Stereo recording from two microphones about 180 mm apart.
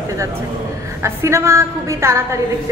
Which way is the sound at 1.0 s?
15° right (ahead or behind).